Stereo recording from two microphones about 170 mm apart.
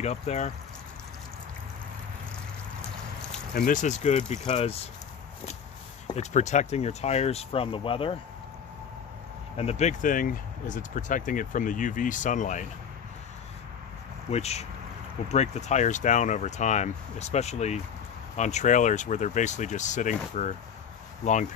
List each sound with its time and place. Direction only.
0.0 s speech: 40° left (ahead or behind)
3.5 s speech: 50° left (ahead or behind)
6.1 s speech: 45° left (ahead or behind)
9.6 s speech: 40° left (ahead or behind)
14.3 s speech: 40° left (ahead or behind)